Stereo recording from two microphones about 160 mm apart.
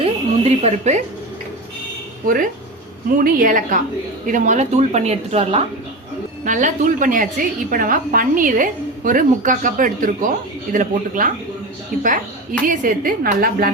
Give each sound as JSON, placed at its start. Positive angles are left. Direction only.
{"t": 0.0, "sound": "a sound", "side_deg": -40}
{"t": 2.2, "sound": "a woman's voice", "side_deg": -60}
{"t": 6.4, "sound": "a woman's voice", "side_deg": -50}